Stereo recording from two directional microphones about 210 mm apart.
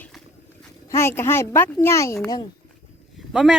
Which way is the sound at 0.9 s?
10° left (ahead or behind).